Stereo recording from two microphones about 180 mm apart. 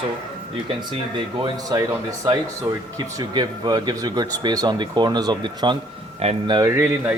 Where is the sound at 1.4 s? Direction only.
20° right (ahead or behind).